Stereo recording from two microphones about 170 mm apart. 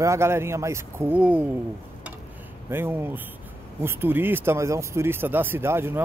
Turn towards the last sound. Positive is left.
turn(degrees=-15)  # may be behind; listen again after turning